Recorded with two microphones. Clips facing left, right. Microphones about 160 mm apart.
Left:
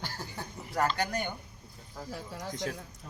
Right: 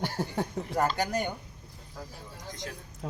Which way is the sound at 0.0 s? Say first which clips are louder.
Right 9 dB; 65° right (ahead or behind).